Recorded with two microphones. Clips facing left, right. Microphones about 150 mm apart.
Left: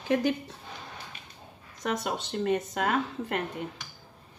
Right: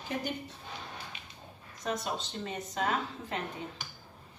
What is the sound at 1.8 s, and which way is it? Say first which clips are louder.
A woman's voice: left 4 dB; 65° left (ahead or behind).